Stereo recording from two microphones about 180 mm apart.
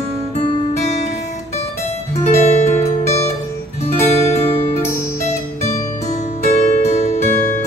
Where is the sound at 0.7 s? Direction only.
40° left (ahead or behind).